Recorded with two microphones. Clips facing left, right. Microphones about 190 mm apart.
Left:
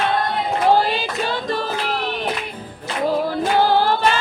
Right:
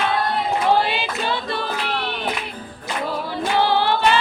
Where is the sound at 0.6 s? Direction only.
40° left (ahead or behind).